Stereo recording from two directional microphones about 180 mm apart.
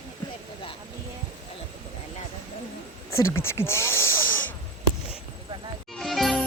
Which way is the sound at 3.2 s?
15° left (ahead or behind).